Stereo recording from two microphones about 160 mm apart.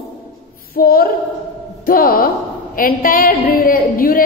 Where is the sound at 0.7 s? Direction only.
70° left (ahead or behind).